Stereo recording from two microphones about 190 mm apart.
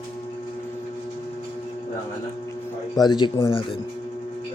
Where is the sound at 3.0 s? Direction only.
20° left (ahead or behind).